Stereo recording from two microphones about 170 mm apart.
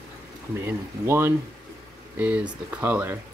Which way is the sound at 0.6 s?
15° right (ahead or behind).